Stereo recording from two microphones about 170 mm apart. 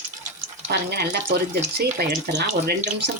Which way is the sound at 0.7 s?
75° right (ahead or behind).